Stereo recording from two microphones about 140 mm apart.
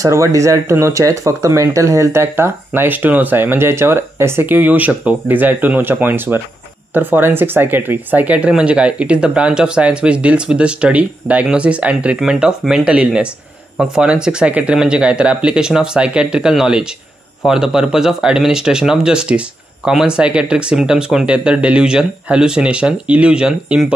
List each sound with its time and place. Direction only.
0.0 s speech: 20° right (ahead or behind); by 23.9 s 5° right (ahead or behind)